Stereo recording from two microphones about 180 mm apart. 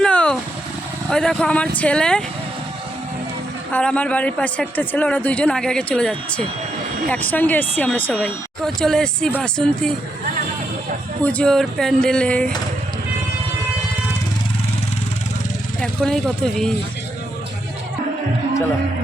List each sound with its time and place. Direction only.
0.0 s vehicle: 5° left (ahead or behind)
1.1 s speech: 5° left (ahead or behind)
3.7 s speech: 10° left (ahead or behind)
11.2 s speech: 5° left (ahead or behind)
16.0 s speech: centre (ahead or behind)